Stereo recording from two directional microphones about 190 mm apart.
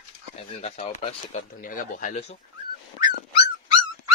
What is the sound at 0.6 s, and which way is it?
Speech, 35° left (ahead or behind).